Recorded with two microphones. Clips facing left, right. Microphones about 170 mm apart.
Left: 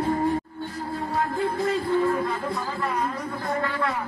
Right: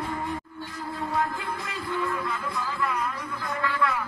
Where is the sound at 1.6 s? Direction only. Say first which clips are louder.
Left 10 dB; 50° left (ahead or behind).